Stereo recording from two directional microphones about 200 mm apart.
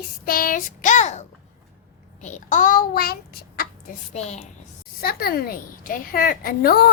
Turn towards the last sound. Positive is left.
turn(degrees=50)  # may be behind; listen again after turning